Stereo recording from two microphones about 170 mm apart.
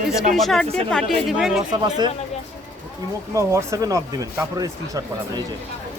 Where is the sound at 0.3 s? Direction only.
Centre (ahead or behind).